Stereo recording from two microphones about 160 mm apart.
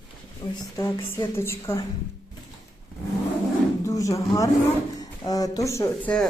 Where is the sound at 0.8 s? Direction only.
20° left (ahead or behind).